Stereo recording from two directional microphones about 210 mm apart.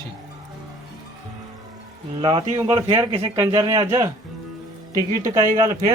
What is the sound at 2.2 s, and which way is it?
A man's voice, 25° right (ahead or behind).